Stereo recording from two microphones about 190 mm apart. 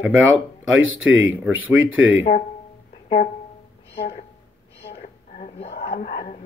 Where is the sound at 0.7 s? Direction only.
90° right.